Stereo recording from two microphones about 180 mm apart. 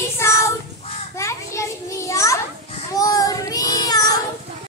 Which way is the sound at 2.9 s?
20° left (ahead or behind).